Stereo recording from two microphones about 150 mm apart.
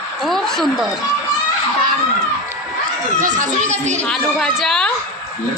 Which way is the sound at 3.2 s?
60° right (ahead or behind).